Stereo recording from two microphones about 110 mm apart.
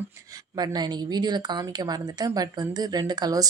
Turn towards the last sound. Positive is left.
turn(degrees=-40)  # may be behind; listen again after turning